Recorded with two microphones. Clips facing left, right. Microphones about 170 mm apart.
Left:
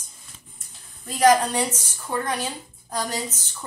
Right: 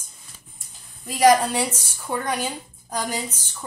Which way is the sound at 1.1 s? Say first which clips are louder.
Right 1 dB; 10° right (ahead or behind).